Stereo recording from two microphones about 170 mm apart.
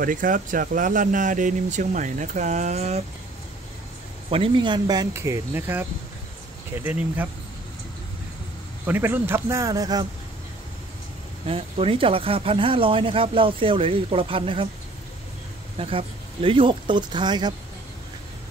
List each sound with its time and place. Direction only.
0.0 s speech: 50° right (ahead or behind)
4.3 s a man's voice: 30° right (ahead or behind); by 7.2 s 10° right (ahead or behind)
8.8 s a man's voice: 10° right (ahead or behind)
11.4 s speech: 35° right (ahead or behind)
15.8 s speech: 35° right (ahead or behind)